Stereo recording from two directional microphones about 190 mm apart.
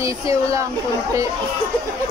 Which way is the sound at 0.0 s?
15° right (ahead or behind).